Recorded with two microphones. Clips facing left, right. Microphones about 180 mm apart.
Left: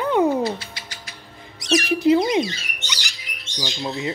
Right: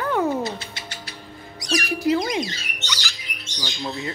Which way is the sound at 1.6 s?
25° left (ahead or behind).